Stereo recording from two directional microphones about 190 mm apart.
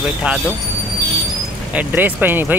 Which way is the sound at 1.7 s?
10° right (ahead or behind).